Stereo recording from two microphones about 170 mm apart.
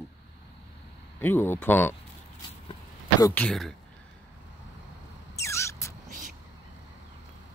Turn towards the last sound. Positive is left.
turn(degrees=15)  # may be behind; listen again after turning